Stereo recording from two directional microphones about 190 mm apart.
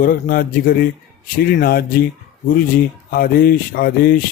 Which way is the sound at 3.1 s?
50° left (ahead or behind).